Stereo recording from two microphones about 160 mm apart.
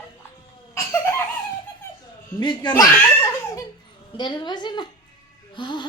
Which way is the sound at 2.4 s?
30° left (ahead or behind).